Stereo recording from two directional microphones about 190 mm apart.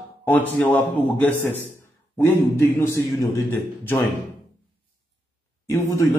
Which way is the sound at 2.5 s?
15° left (ahead or behind).